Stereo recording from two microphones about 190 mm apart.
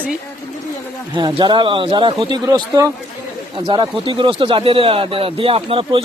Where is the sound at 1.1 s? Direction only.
25° right (ahead or behind).